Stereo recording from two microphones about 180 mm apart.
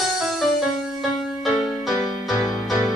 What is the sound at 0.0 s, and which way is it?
Music, centre (ahead or behind).